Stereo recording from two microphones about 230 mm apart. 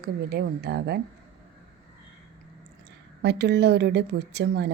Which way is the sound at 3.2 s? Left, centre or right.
Right.